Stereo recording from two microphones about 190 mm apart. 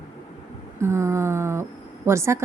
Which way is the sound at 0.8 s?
15° right (ahead or behind).